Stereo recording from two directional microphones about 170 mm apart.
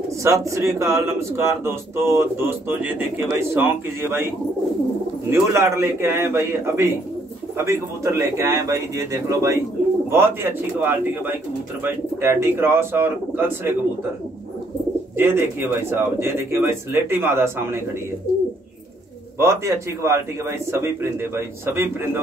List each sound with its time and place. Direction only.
0.2 s speech: 15° right (ahead or behind)
5.3 s speech: 15° right (ahead or behind)
15.1 s speech: 15° right (ahead or behind)
19.3 s speech: 15° right (ahead or behind)